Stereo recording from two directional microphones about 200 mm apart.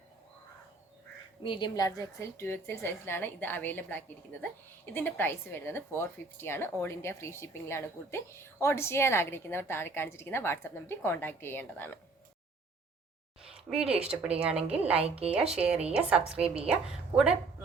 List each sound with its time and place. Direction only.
1.5 s a woman's voice: 20° left (ahead or behind)
13.7 s a woman's voice: 5° right (ahead or behind)
14.9 s speech: 30° right (ahead or behind)
15.5 s a woman's voice: 5° right (ahead or behind)